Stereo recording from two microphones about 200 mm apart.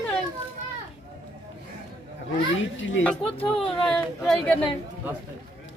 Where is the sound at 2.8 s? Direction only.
70° left (ahead or behind).